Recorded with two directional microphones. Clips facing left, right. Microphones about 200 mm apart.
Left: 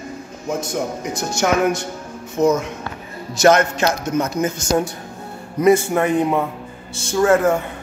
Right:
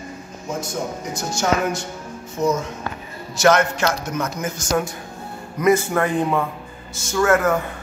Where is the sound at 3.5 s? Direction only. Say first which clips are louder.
Left 2 dB; 25° left (ahead or behind).